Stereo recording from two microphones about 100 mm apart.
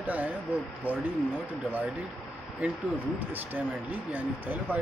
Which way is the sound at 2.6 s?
10° right (ahead or behind).